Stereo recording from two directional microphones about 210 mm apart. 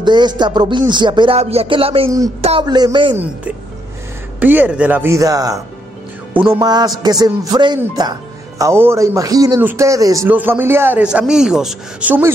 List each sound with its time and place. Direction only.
0.0 s music: 20° right (ahead or behind)
4.4 s speech: 10° right (ahead or behind)
6.3 s music: 10° right (ahead or behind)
8.5 s speech: 15° right (ahead or behind)